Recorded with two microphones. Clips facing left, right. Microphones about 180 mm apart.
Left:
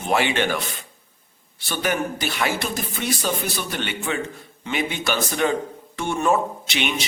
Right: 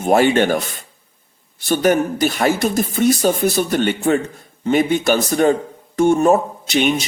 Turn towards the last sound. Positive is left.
turn(degrees=-45)  # may be behind; listen again after turning